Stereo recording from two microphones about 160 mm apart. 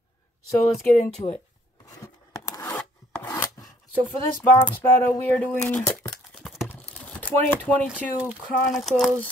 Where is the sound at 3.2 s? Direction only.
25° left (ahead or behind).